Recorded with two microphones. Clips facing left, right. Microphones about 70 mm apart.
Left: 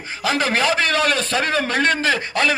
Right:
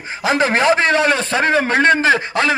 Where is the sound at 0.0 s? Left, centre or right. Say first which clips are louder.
Right 4 dB; right.